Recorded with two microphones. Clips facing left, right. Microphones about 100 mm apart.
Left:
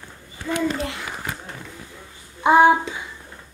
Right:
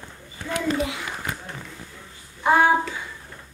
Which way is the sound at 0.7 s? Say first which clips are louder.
Right 2 dB; centre (ahead or behind).